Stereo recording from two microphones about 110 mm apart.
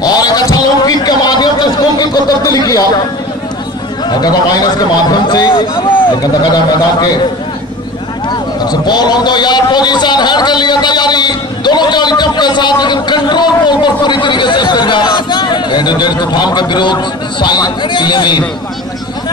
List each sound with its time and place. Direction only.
0.0 s a sound: 35° left (ahead or behind)
4.1 s a man's voice: 40° left (ahead or behind)
6.5 s a man's voice: 35° left (ahead or behind)
8.3 s a man's voice: 40° left (ahead or behind)